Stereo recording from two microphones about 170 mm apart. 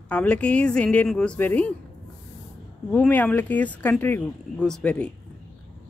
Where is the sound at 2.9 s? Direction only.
10° left (ahead or behind).